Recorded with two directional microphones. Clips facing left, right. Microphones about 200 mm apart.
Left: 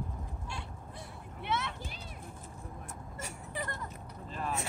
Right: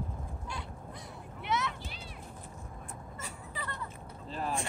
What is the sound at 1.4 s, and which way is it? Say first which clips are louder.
Vehicle: right 2 dB; 30° left (ahead or behind).